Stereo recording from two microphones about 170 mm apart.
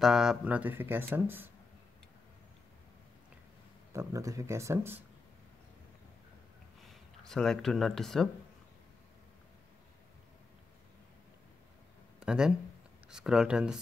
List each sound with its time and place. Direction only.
0.0 s speech: 5° right (ahead or behind)
3.9 s speech: 20° right (ahead or behind)
6.8 s speech: centre (ahead or behind)
12.2 s speech: 5° right (ahead or behind)